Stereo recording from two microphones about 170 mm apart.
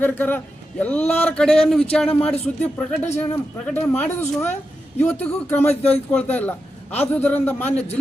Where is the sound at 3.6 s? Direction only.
10° left (ahead or behind).